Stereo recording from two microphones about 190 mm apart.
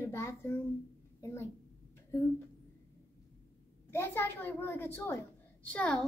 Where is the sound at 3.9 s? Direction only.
15° left (ahead or behind).